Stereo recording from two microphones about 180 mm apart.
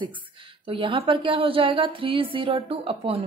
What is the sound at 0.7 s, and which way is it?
A woman's voice, 30° right (ahead or behind).